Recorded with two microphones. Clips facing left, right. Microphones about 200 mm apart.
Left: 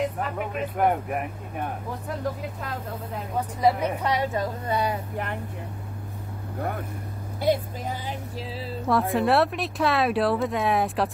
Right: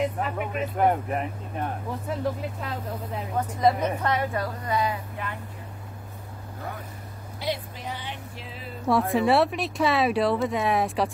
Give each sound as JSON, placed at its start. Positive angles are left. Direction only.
{"t": 0.0, "sound": "speech", "side_deg": 0}
{"t": 3.6, "sound": "a woman's voice", "side_deg": 10}
{"t": 4.9, "sound": "speech", "side_deg": 55}
{"t": 7.3, "sound": "speech", "side_deg": 50}
{"t": 8.8, "sound": "speech", "side_deg": 0}